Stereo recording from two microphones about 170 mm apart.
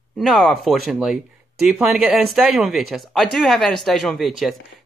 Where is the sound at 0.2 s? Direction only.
Centre (ahead or behind).